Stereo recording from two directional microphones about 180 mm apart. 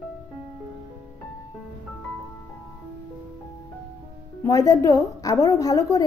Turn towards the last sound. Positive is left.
turn(degrees=20)  # may be behind; listen again after turning